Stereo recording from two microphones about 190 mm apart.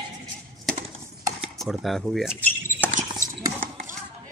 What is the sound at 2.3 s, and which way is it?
Rodents, 10° left (ahead or behind).